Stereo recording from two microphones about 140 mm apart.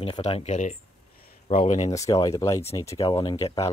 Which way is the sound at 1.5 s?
65° left (ahead or behind).